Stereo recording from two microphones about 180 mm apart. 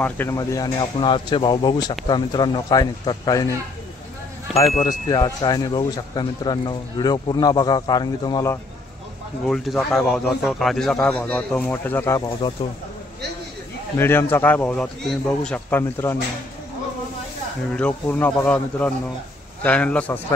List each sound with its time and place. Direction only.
0.0 s speech: 15° left (ahead or behind)
5.1 s speech: 20° left (ahead or behind)
9.4 s speech: centre (ahead or behind)
12.3 s speech: 30° left (ahead or behind)
13.9 s speech: 10° left (ahead or behind)
17.7 s speech: 5° left (ahead or behind)